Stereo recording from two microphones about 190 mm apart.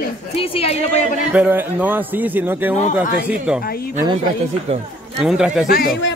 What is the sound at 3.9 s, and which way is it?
Speech, 20° right (ahead or behind).